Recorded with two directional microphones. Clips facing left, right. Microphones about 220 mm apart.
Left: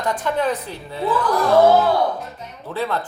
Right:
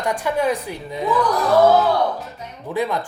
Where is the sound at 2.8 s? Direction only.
15° right (ahead or behind).